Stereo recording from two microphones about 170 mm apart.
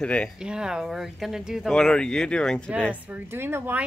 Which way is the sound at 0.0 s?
5° left (ahead or behind).